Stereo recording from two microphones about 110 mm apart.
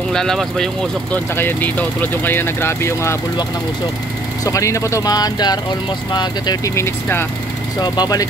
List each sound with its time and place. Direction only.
0.1 s speech: 5° left (ahead or behind)
1.1 s speech: 20° left (ahead or behind)
4.5 s speech: 30° left (ahead or behind)
6.7 s speech: 20° left (ahead or behind)
7.8 s speech: 40° left (ahead or behind)